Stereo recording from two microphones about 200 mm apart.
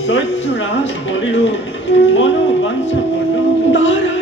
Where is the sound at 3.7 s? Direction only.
65° left (ahead or behind).